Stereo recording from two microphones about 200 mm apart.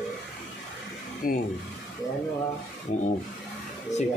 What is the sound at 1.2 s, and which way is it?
Speech, 45° left (ahead or behind).